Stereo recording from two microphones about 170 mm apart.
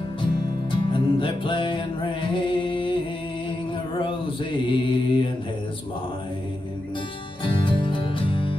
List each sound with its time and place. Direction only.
0.7 s music: 30° left (ahead or behind)
2.3 s singing: 30° left (ahead or behind)
4.0 s mantra: 30° left (ahead or behind)
7.4 s music: 30° left (ahead or behind)